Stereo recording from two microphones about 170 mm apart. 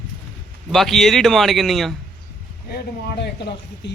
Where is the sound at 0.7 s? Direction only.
Centre (ahead or behind).